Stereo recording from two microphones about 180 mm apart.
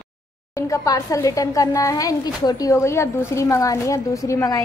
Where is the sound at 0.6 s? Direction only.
15° left (ahead or behind).